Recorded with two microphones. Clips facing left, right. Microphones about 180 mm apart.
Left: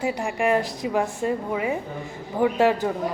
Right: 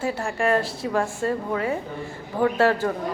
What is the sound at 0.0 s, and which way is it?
A woman's voice, 15° left (ahead or behind).